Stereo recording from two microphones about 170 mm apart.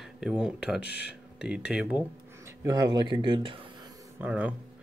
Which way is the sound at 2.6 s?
20° right (ahead or behind).